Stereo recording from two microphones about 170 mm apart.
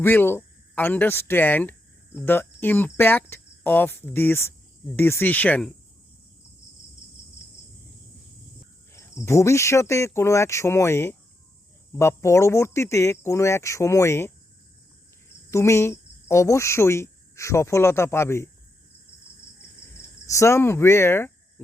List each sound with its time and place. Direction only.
0.0 s cricket: 10° left (ahead or behind)
8.9 s cricket: 15° left (ahead or behind)
15.4 s cricket: 15° left (ahead or behind)
20.2 s cricket: 15° left (ahead or behind)